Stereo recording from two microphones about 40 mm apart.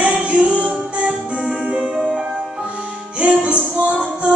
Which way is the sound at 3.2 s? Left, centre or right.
Right.